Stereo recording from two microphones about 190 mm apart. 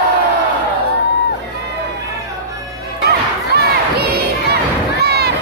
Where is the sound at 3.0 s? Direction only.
55° right (ahead or behind).